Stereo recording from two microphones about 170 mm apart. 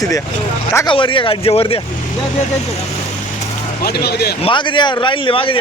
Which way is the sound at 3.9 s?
70° left (ahead or behind).